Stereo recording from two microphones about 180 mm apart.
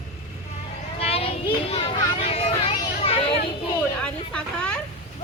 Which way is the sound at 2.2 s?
30° left (ahead or behind).